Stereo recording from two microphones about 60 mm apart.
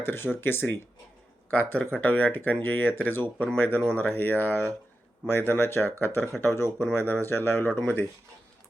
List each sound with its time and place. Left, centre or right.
0.0 s speech: left
3.3 s speech: centre
3.9 s speech: left
7.7 s speech: left